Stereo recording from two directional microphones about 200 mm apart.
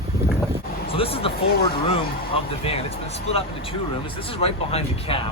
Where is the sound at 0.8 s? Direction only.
30° left (ahead or behind).